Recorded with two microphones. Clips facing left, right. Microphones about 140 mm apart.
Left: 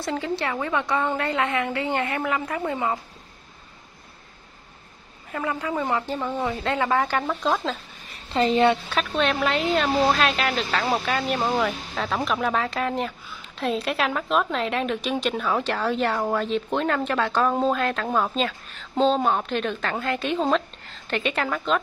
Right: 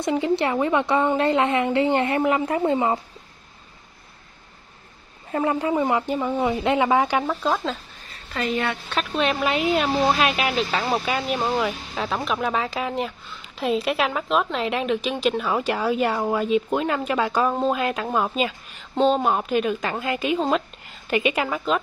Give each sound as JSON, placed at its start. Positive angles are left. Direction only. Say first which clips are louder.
{"t": 0.0, "sound": "a woman's voice", "louder": "right 5 dB", "side_deg": -20}
{"t": 5.3, "sound": "a woman's voice", "louder": "right 5 dB", "side_deg": -30}
{"t": 5.8, "sound": "a woman's voice", "louder": "right 4 dB", "side_deg": -15}
{"t": 8.3, "sound": "a woman's voice", "louder": "left 6 dB", "side_deg": 25}
{"t": 8.8, "sound": "a woman's voice", "louder": "even", "side_deg": 0}